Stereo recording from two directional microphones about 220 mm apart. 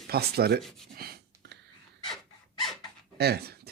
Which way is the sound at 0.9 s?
45° right (ahead or behind).